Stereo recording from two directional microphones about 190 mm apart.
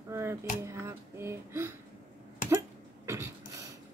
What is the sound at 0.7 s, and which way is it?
Speech, 15° right (ahead or behind).